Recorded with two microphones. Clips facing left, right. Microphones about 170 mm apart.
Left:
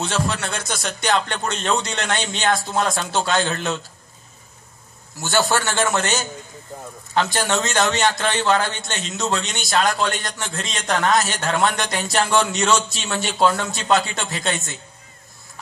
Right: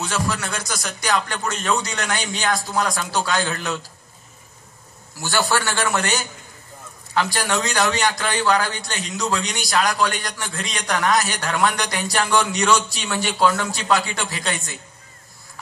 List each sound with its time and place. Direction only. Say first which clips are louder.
0.0 s a man's voice: left 1 dB; 25° left (ahead or behind)
5.2 s a man's voice: left 1 dB; 20° left (ahead or behind)
6.7 s a sound: left 8 dB; 50° left (ahead or behind)
7.2 s a man's voice: left 1 dB; 20° left (ahead or behind)